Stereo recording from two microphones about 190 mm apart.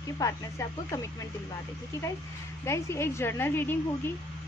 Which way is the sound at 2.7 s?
15° left (ahead or behind).